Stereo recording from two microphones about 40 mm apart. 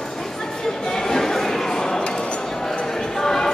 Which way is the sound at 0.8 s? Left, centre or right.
Centre.